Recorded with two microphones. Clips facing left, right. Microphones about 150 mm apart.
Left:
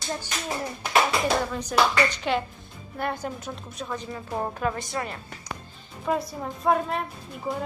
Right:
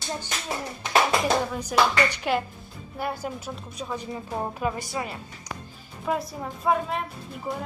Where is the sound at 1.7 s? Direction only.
5° right (ahead or behind).